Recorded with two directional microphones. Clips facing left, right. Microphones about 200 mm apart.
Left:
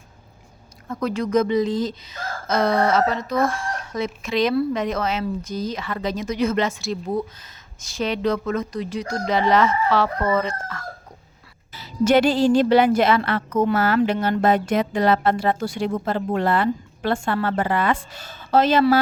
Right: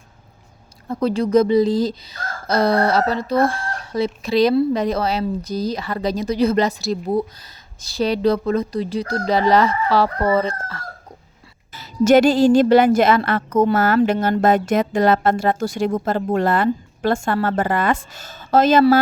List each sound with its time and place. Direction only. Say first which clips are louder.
0.9 s speech: right 5 dB; 30° right (ahead or behind)
11.7 s speech: right 4 dB; 45° right (ahead or behind)